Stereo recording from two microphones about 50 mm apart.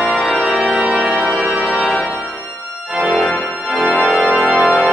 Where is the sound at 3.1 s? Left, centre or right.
Left.